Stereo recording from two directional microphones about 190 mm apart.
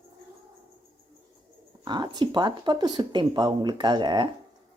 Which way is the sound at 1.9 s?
25° right (ahead or behind).